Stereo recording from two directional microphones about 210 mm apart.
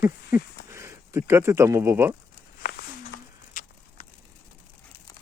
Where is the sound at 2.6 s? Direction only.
45° left (ahead or behind).